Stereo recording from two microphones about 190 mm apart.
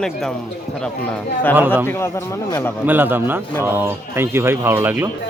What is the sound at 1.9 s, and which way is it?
Speech, 15° left (ahead or behind).